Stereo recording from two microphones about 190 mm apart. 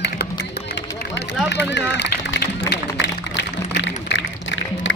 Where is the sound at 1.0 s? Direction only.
65° left (ahead or behind).